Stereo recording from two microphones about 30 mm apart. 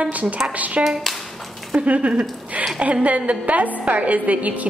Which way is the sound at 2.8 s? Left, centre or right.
Right.